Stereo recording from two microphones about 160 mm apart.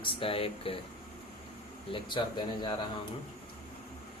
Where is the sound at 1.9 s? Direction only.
30° left (ahead or behind).